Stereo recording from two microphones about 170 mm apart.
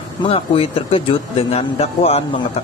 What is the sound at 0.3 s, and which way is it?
Speech, 30° left (ahead or behind).